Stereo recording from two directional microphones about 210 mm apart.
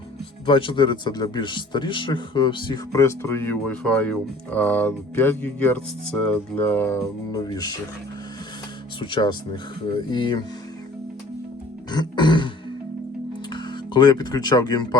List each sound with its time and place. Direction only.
0.4 s speech: 25° left (ahead or behind)
9.0 s speech: 25° left (ahead or behind)
11.9 s speech: 20° left (ahead or behind)
13.5 s speech: 20° left (ahead or behind)